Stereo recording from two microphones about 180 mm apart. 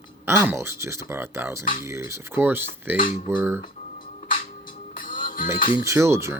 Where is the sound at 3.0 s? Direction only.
45° left (ahead or behind).